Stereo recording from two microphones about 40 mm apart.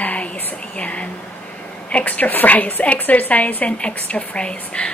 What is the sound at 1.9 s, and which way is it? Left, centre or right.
A woman's voice, left.